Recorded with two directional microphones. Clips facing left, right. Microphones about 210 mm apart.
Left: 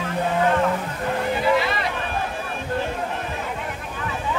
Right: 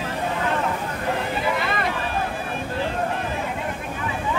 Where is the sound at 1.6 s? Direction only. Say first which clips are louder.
Left 1 dB; 55° right (ahead or behind).